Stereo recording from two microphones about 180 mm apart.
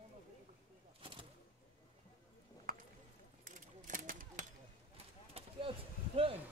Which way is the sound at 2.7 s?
50° right (ahead or behind).